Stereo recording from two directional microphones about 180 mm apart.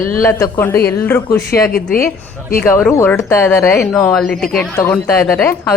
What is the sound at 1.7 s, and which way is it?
Speech, 55° left (ahead or behind).